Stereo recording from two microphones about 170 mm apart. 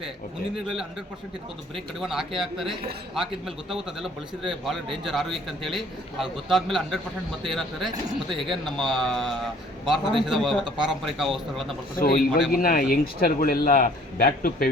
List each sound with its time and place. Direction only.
0.5 s a man's voice: 5° right (ahead or behind)
11.9 s speech: 55° left (ahead or behind)